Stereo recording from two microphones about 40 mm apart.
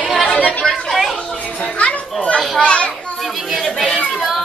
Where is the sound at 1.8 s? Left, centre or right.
Left.